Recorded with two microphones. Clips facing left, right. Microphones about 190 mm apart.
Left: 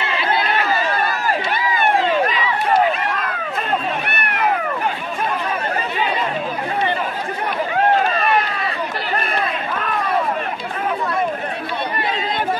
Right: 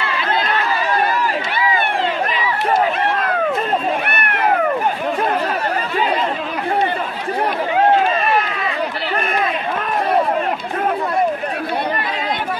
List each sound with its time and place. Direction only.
0.7 s run: 45° left (ahead or behind)